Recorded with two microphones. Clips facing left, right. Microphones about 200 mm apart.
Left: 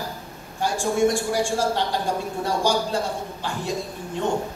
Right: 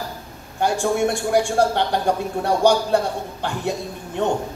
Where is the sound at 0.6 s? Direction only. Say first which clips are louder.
Right 2 dB; 65° right (ahead or behind).